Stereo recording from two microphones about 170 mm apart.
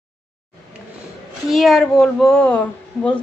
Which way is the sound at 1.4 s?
Centre (ahead or behind).